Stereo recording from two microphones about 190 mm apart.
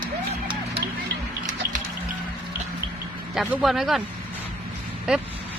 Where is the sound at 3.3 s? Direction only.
Centre (ahead or behind).